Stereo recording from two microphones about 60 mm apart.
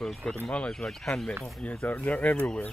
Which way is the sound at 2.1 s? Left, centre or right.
Left.